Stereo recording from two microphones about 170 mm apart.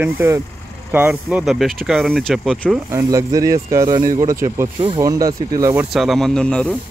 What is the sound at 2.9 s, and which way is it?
Speech, 20° right (ahead or behind).